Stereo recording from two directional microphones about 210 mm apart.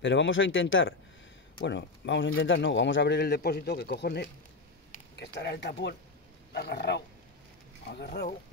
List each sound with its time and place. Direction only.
0.0 s speech: 60° left (ahead or behind)
1.6 s speech: 55° left (ahead or behind)